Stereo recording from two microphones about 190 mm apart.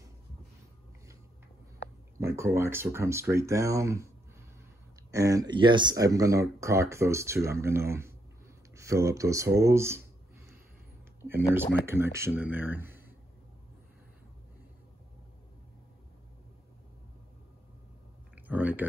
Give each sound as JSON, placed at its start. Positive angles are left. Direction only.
{"t": 2.1, "sound": "speech", "side_deg": -15}
{"t": 5.1, "sound": "speech", "side_deg": -15}
{"t": 11.1, "sound": "speech", "side_deg": -10}
{"t": 18.3, "sound": "a sound", "side_deg": -10}